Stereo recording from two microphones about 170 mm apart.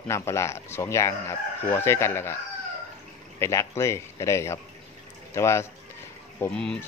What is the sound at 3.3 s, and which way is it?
Speech, 15° left (ahead or behind).